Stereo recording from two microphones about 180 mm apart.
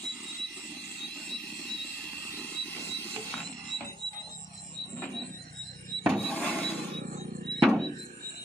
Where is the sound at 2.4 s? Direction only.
10° left (ahead or behind).